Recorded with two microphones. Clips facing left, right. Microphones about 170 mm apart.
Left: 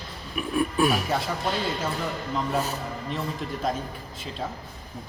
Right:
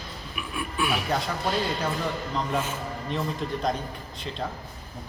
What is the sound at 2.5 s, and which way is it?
Speech, 35° left (ahead or behind).